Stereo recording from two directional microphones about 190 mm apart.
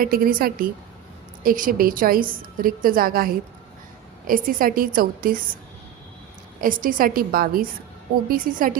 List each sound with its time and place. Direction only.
0.0 s a woman's voice: 50° right (ahead or behind)
6.6 s a woman's voice: 45° right (ahead or behind)